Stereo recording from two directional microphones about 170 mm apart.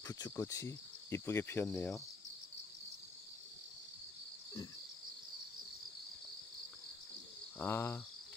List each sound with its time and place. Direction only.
0.0 s cricket: 20° left (ahead or behind)
7.5 s cricket: 10° left (ahead or behind)